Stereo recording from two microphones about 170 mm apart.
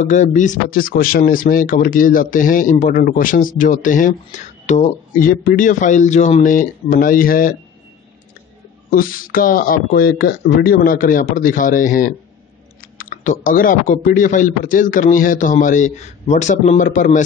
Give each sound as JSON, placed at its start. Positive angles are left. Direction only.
{"t": 0.0, "sound": "speech", "side_deg": 45}
{"t": 5.3, "sound": "speech", "side_deg": 55}
{"t": 8.9, "sound": "speech", "side_deg": 55}